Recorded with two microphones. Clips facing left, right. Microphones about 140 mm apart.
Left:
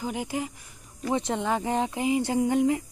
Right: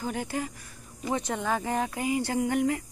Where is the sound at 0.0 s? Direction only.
15° left (ahead or behind).